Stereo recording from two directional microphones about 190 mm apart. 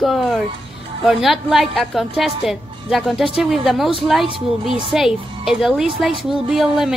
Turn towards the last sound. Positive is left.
turn(degrees=0)  # may be behind; listen again after turning